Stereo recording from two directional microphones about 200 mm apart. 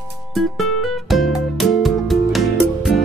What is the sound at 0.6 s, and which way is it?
Music, centre (ahead or behind).